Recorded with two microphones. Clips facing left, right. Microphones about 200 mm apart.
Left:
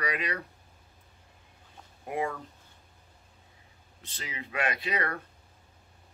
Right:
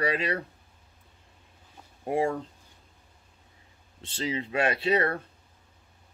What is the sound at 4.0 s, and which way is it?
Speech, 30° right (ahead or behind).